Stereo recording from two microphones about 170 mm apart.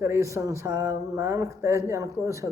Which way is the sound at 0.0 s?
15° right (ahead or behind).